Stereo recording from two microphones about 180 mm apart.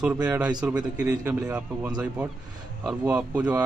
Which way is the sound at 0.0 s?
10° right (ahead or behind).